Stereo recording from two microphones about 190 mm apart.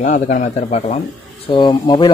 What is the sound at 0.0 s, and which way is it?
Speech, 40° left (ahead or behind).